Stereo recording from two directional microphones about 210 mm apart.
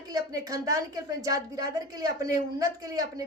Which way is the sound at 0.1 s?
15° right (ahead or behind).